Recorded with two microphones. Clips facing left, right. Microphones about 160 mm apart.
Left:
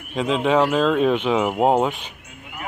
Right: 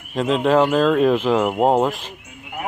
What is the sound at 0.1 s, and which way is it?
Speech, centre (ahead or behind).